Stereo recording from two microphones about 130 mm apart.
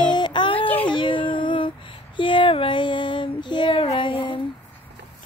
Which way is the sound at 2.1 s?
40° left (ahead or behind).